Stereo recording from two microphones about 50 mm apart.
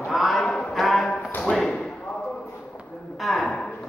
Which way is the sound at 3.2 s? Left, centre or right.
Centre.